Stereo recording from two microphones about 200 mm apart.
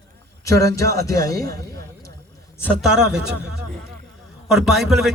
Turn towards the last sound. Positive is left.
turn(degrees=0)  # may be behind; listen again after turning